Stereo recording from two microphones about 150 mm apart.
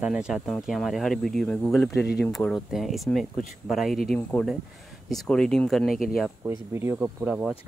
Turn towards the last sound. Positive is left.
turn(degrees=-10)  # may be behind; listen again after turning